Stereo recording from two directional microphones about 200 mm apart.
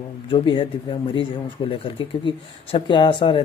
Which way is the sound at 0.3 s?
25° left (ahead or behind).